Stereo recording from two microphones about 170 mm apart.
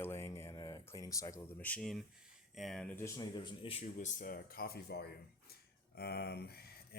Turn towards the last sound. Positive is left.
turn(degrees=70)  # may be behind; listen again after turning